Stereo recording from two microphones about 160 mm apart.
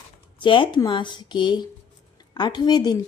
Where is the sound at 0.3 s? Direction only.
30° left (ahead or behind).